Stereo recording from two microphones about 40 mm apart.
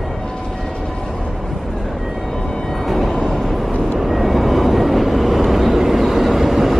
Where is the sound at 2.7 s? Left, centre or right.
Centre.